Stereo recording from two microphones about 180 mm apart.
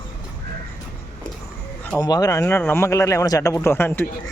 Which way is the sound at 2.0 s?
20° left (ahead or behind).